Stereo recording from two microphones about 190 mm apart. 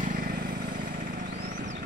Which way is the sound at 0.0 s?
45° right (ahead or behind).